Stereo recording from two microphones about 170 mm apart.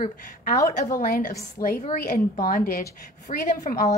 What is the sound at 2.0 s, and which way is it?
A woman's voice, 60° left (ahead or behind).